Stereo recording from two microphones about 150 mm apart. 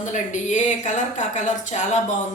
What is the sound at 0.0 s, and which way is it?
Speech, 55° left (ahead or behind).